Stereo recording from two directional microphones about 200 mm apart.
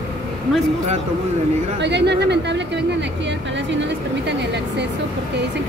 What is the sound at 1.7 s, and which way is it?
Speech, 60° right (ahead or behind).